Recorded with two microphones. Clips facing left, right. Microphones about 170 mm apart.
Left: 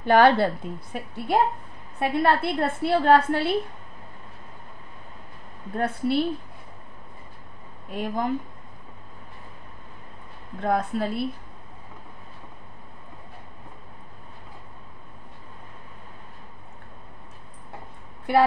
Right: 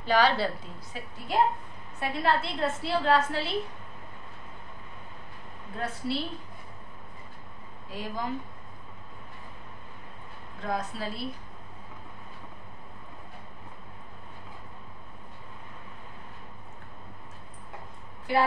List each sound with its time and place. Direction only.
0.0 s a woman's voice: 55° left (ahead or behind)
5.8 s a woman's voice: 55° left (ahead or behind)
7.9 s a woman's voice: 55° left (ahead or behind)
10.6 s a woman's voice: 55° left (ahead or behind)